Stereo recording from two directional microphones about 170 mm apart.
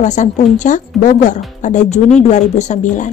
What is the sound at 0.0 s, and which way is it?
A woman's voice, 45° left (ahead or behind).